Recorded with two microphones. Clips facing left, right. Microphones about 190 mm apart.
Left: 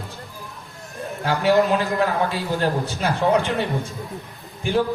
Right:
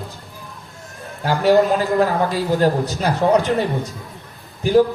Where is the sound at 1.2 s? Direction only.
40° right (ahead or behind).